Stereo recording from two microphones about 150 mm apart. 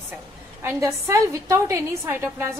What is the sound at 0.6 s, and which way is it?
A woman's voice, 20° right (ahead or behind).